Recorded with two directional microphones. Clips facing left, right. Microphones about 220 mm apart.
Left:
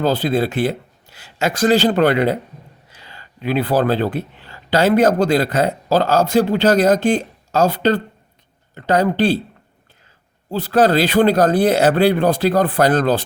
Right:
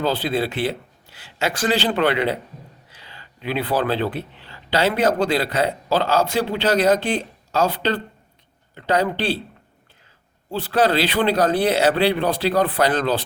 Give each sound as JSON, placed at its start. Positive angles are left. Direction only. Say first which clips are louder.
{"t": 0.0, "sound": "speech", "louder": "left 4 dB", "side_deg": 45}
{"t": 10.5, "sound": "speech", "louder": "left 4 dB", "side_deg": 45}